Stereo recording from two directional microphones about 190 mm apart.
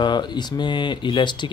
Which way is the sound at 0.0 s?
25° left (ahead or behind).